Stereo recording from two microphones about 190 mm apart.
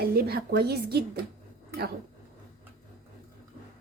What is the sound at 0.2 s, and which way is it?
Speech, 55° right (ahead or behind).